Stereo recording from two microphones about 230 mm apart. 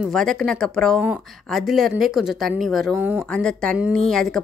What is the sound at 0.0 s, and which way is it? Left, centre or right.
Speech, centre.